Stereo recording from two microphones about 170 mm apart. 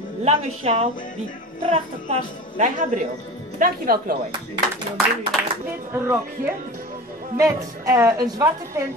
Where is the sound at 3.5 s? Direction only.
55° right (ahead or behind).